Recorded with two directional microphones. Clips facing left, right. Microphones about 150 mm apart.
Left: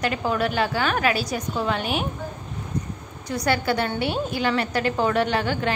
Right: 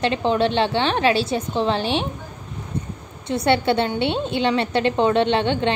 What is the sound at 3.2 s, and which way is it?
A woman's voice, 25° right (ahead or behind).